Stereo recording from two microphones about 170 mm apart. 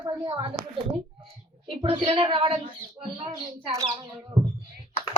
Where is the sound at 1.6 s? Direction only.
35° right (ahead or behind).